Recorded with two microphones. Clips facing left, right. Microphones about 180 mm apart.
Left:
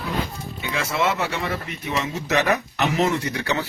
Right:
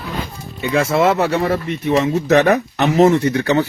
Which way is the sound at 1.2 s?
55° right (ahead or behind).